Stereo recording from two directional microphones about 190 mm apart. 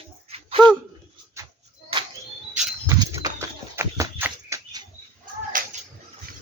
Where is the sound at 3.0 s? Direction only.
20° right (ahead or behind).